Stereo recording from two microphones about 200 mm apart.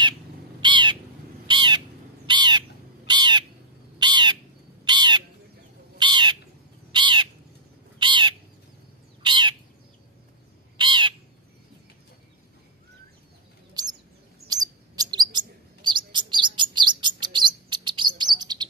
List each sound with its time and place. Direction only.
0.6 s crow: 25° right (ahead or behind)
1.5 s bird: 25° right (ahead or behind)
2.2 s crow: 20° right (ahead or behind)
3.1 s owl: 20° right (ahead or behind)
4.0 s crow: 20° right (ahead or behind)
4.8 s bird: 20° right (ahead or behind)
10.8 s bird: 25° right (ahead or behind)
13.8 s chirp: 20° right (ahead or behind)
14.5 s bird: 20° right (ahead or behind)